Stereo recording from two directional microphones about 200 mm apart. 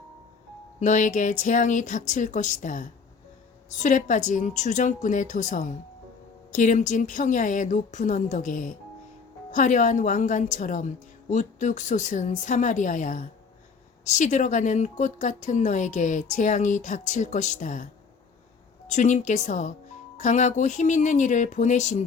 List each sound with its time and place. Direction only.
0.8 s a woman's voice: 40° left (ahead or behind)
18.9 s a woman's voice: 35° left (ahead or behind)